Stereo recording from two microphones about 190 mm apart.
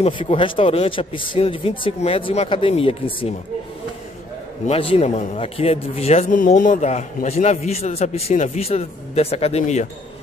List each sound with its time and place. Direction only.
0.0 s speech: 30° left (ahead or behind)
4.6 s speech: 30° left (ahead or behind)